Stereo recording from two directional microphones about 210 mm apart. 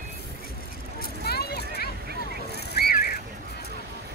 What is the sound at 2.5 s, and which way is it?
Boat, 50° left (ahead or behind).